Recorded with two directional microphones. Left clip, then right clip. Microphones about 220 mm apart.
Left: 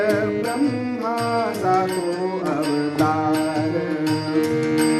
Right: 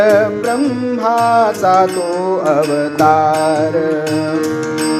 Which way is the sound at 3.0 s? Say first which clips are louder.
Right 11 dB; 45° right (ahead or behind).